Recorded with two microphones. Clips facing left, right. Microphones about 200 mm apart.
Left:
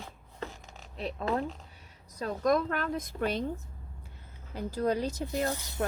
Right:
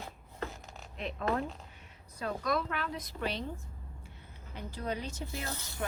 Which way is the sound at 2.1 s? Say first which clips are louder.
Left 6 dB; 40° left (ahead or behind).